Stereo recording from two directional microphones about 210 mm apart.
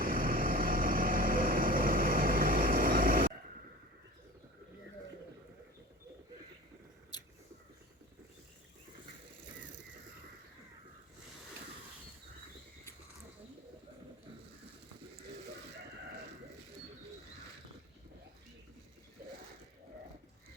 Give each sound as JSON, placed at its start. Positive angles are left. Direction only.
{"t": 0.0, "sound": "vehicle", "side_deg": -40}